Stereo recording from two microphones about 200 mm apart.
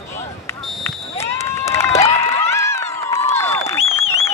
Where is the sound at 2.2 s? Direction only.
15° left (ahead or behind).